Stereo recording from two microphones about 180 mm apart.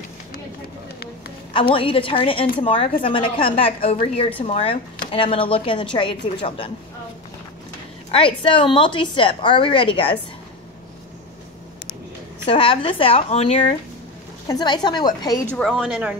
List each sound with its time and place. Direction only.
1.5 s a woman's voice: 30° left (ahead or behind)
8.1 s a woman's voice: 30° left (ahead or behind)
12.4 s speech: 30° left (ahead or behind)
14.5 s a woman's voice: 25° left (ahead or behind)
15.5 s a woman's voice: centre (ahead or behind)